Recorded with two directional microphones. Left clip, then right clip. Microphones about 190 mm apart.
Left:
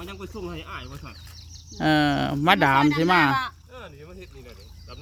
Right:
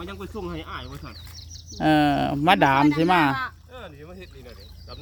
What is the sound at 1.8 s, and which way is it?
Speech, 10° left (ahead or behind).